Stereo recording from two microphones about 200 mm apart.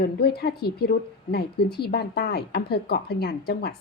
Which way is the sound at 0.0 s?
55° left (ahead or behind).